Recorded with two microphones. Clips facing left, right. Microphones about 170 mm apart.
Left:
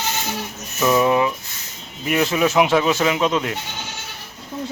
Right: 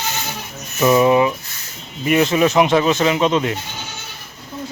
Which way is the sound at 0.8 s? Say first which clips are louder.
Right 4 dB; 5° right (ahead or behind).